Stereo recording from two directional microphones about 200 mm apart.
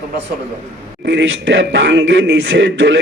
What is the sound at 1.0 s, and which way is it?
Speech, 65° right (ahead or behind).